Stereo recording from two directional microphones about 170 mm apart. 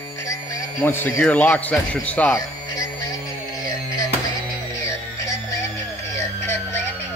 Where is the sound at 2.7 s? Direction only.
20° left (ahead or behind).